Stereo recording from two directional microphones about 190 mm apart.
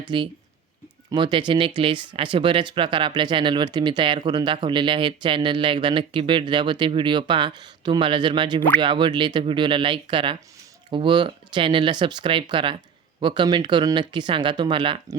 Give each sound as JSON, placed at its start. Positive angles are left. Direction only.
{"t": 0.1, "sound": "speech", "side_deg": -25}